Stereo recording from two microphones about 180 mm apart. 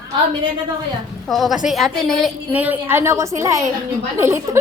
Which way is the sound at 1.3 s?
Centre (ahead or behind).